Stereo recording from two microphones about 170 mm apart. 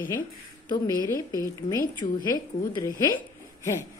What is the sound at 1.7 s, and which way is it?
A woman's voice, 25° left (ahead or behind).